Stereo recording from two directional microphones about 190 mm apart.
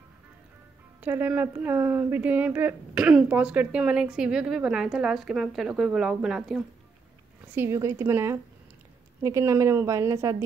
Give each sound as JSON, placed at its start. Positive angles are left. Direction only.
{"t": 1.0, "sound": "speech", "side_deg": -10}
{"t": 7.5, "sound": "a woman's voice", "side_deg": -15}